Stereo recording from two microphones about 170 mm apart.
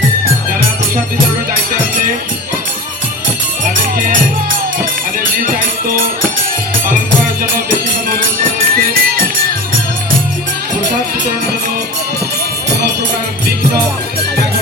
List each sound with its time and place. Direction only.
3.6 s music: 50° right (ahead or behind)
5.4 s music: 55° right (ahead or behind)
8.7 s music: 60° right (ahead or behind)